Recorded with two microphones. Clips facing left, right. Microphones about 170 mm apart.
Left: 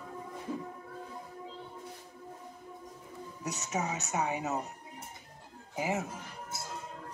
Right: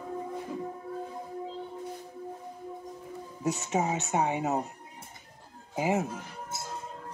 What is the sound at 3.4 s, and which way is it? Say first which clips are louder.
Speech: right 6 dB; 30° right (ahead or behind).